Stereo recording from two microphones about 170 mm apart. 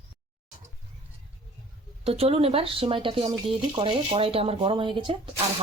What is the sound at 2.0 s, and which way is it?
Speech, 35° right (ahead or behind).